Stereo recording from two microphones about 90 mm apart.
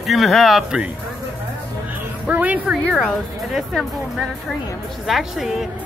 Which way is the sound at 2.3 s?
20° right (ahead or behind).